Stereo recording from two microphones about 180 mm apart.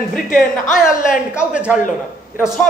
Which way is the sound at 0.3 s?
55° left (ahead or behind).